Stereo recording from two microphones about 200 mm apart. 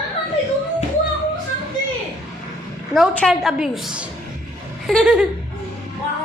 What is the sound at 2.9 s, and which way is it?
A woman's voice, 5° left (ahead or behind).